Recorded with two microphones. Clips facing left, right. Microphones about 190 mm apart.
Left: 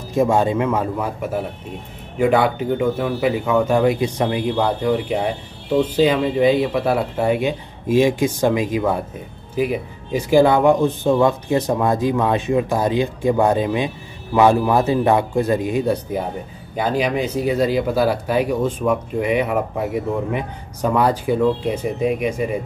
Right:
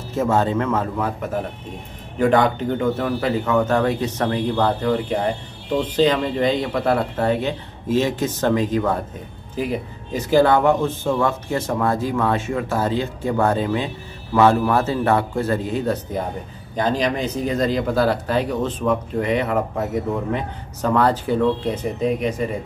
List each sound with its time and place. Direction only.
0.1 s speech: 15° left (ahead or behind)